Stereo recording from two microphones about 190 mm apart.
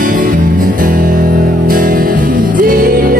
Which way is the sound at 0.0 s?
45° right (ahead or behind).